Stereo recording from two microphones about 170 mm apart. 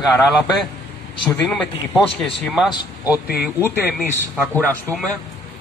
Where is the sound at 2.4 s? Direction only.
Centre (ahead or behind).